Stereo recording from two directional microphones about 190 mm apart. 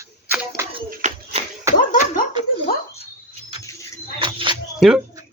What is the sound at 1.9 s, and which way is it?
Laughter, 45° left (ahead or behind).